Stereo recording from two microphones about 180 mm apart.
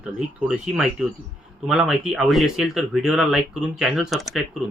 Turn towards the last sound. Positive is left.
turn(degrees=0)  # may be behind; listen again after turning